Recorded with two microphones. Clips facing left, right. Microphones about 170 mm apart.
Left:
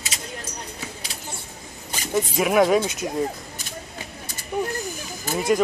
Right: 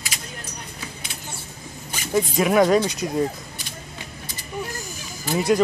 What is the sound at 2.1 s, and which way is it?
Speech, 5° left (ahead or behind).